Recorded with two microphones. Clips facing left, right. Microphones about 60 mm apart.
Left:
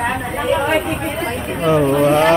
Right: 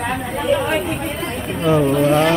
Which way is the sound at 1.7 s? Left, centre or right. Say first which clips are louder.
Left 1 dB; centre.